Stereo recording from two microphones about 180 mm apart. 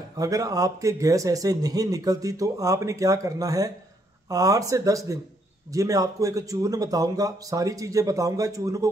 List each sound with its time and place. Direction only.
0.2 s a man's voice: 20° right (ahead or behind)